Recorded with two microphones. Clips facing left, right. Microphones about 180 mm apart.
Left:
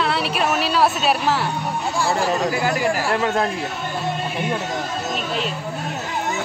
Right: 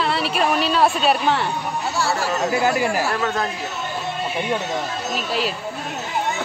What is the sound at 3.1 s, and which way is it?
Speech, 25° left (ahead or behind).